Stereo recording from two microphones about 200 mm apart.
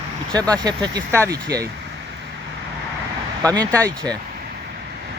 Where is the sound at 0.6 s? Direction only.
20° right (ahead or behind).